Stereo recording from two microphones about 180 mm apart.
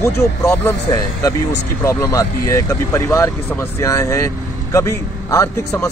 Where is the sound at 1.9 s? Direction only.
15° left (ahead or behind).